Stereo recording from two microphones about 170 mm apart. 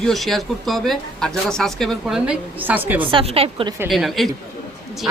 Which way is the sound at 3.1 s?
35° right (ahead or behind).